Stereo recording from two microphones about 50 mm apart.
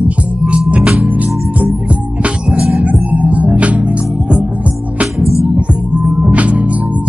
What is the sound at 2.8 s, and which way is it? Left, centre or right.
Music, right.